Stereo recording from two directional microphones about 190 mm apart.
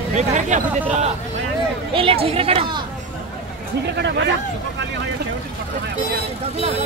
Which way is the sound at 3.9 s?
65° right (ahead or behind).